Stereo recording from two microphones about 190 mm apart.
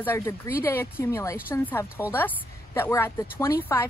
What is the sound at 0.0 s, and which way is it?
A woman's voice, 10° left (ahead or behind).